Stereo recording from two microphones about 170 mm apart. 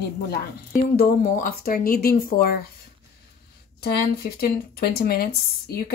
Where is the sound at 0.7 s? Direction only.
55° left (ahead or behind).